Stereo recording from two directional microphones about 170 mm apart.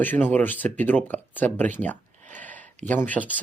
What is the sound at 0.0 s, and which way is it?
Speech, 10° left (ahead or behind).